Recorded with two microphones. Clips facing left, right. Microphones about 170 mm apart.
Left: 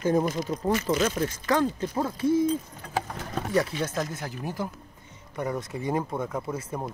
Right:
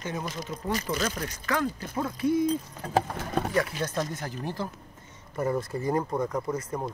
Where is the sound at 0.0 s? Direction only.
45° left (ahead or behind).